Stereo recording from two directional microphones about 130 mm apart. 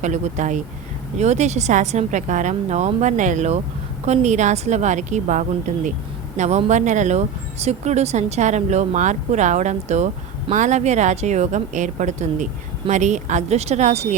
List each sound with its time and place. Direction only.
0.0 s a woman's voice: 70° right (ahead or behind)